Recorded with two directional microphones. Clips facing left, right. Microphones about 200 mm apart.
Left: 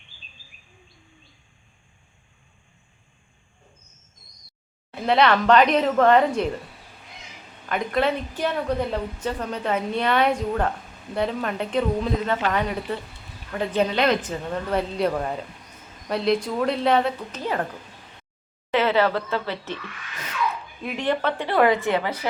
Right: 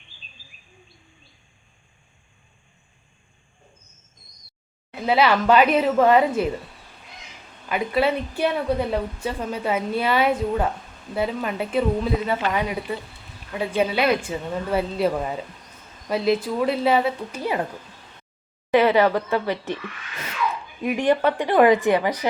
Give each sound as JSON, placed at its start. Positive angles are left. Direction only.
{"t": 4.9, "sound": "speech", "side_deg": -5}
{"t": 7.7, "sound": "a woman's voice", "side_deg": -5}
{"t": 18.7, "sound": "a woman's voice", "side_deg": -15}